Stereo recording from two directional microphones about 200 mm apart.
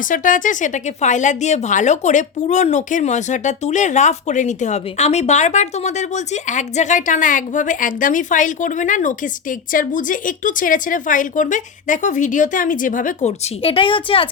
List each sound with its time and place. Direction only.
0.0 s speech: 40° left (ahead or behind); by 14.3 s 25° left (ahead or behind)